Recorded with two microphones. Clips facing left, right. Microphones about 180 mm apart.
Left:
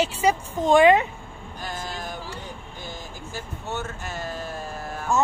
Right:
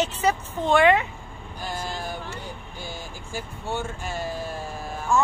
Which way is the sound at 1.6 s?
10° right (ahead or behind).